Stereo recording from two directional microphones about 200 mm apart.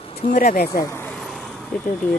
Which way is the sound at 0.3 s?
40° left (ahead or behind).